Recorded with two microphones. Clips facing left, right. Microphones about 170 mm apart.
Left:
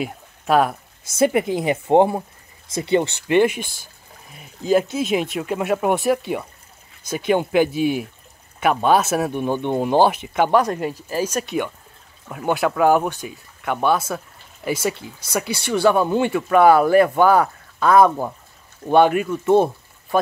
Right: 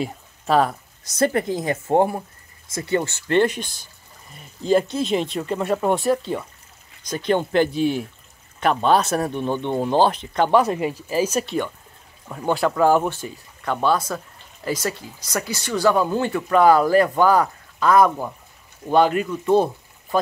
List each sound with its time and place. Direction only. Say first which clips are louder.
0.0 s speech: even; 5° left (ahead or behind)
10.6 s speech: right 1 dB; 5° right (ahead or behind)
12.3 s speech: left 1 dB; 5° left (ahead or behind)
15.0 s speech: left 2 dB; 25° left (ahead or behind)